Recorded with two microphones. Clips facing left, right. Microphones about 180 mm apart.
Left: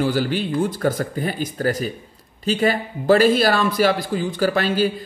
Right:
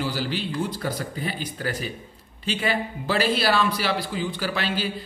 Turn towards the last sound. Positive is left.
turn(degrees=45)  # may be behind; listen again after turning